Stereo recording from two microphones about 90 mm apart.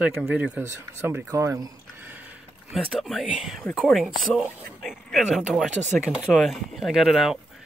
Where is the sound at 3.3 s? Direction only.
10° right (ahead or behind).